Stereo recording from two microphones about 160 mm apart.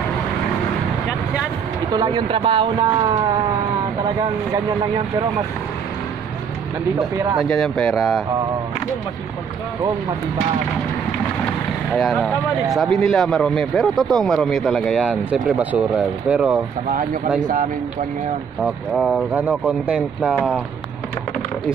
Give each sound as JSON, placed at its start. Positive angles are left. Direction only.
{"t": 2.0, "sound": "speech", "side_deg": -30}
{"t": 7.3, "sound": "speech", "side_deg": 0}
{"t": 11.9, "sound": "speech", "side_deg": 0}
{"t": 18.6, "sound": "speech", "side_deg": -5}